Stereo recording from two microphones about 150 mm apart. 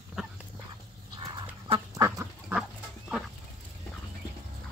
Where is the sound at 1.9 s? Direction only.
20° right (ahead or behind).